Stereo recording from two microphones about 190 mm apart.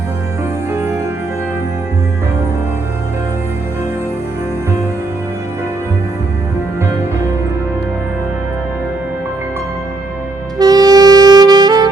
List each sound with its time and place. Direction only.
0.7 s music: 15° right (ahead or behind)
10.6 s saxophone: 20° right (ahead or behind)